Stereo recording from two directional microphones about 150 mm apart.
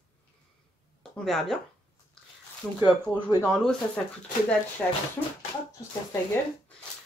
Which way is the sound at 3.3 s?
15° right (ahead or behind).